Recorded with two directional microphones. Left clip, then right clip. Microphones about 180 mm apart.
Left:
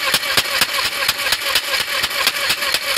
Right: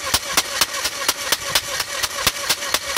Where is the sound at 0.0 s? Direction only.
25° left (ahead or behind).